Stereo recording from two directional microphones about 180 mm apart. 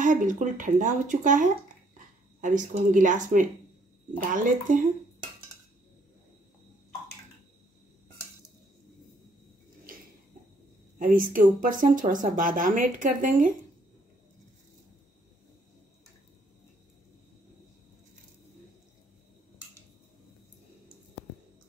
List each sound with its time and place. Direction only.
0.0 s a woman's voice: 45° right (ahead or behind)
2.4 s a woman's voice: 45° right (ahead or behind)
11.0 s a woman's voice: 50° right (ahead or behind)